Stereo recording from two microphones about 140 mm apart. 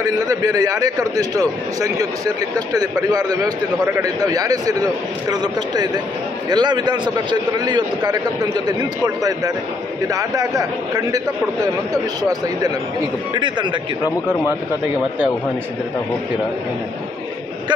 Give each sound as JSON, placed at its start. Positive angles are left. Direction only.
{"t": 0.0, "sound": "a man's voice", "side_deg": -25}